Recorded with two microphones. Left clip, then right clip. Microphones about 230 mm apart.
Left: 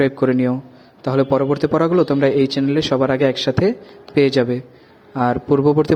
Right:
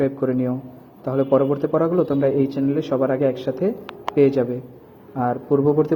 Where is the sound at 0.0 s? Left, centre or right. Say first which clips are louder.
Left 5 dB; left.